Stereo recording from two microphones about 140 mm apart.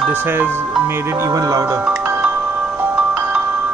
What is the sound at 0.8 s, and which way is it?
Speech, 15° right (ahead or behind).